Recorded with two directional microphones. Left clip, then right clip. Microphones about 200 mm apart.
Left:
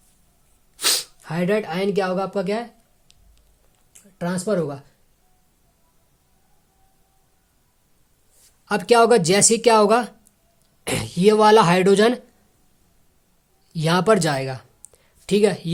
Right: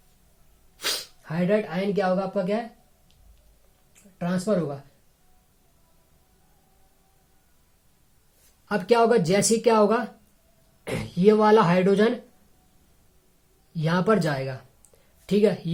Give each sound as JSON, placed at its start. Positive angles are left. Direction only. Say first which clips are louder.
{"t": 0.8, "sound": "speech", "louder": "left 7 dB", "side_deg": 50}
{"t": 4.2, "sound": "speech", "louder": "left 3 dB", "side_deg": 55}
{"t": 8.6, "sound": "a woman's voice", "louder": "left 5 dB", "side_deg": 45}
{"t": 13.7, "sound": "a woman's voice", "louder": "left 5 dB", "side_deg": 40}